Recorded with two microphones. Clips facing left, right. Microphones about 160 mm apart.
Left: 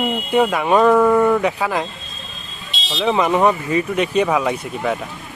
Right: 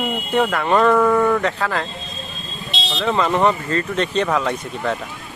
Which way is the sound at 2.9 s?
10° left (ahead or behind).